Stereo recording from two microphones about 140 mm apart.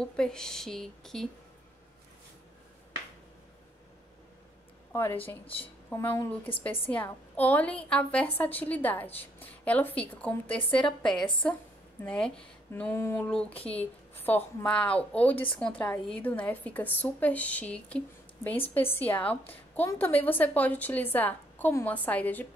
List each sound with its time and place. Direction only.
0.0 s speech: 5° left (ahead or behind)
6.0 s a woman's voice: 10° left (ahead or behind)
12.9 s a woman's voice: 20° left (ahead or behind)
13.3 s a woman's voice: 5° left (ahead or behind)